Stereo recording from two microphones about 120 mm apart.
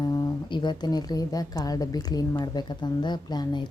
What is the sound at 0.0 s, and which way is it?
A woman's voice, 35° left (ahead or behind).